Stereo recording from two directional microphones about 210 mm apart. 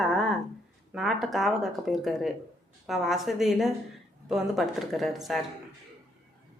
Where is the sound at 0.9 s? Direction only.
Centre (ahead or behind).